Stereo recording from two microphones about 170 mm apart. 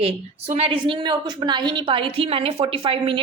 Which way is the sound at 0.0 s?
35° right (ahead or behind).